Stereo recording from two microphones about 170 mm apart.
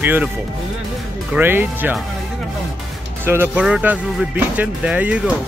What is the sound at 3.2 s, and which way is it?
Speech, 10° right (ahead or behind).